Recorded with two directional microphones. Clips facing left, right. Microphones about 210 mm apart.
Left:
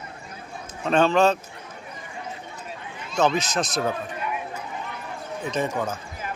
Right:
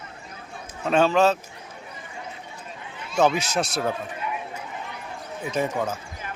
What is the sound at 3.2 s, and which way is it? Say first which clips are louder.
Speech: right 1 dB; 10° right (ahead or behind).